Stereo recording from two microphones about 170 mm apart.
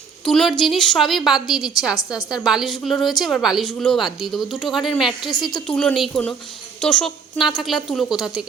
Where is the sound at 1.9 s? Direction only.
20° left (ahead or behind).